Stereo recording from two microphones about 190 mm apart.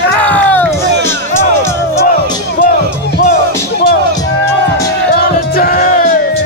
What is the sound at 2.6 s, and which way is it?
Music, 50° left (ahead or behind).